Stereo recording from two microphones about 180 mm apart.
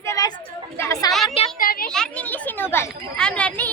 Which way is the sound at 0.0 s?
20° left (ahead or behind).